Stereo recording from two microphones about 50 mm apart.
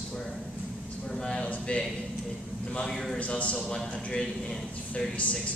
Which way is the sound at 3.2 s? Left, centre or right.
Left.